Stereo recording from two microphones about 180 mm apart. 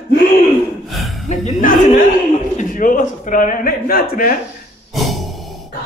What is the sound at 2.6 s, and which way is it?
A man's voice, 50° left (ahead or behind).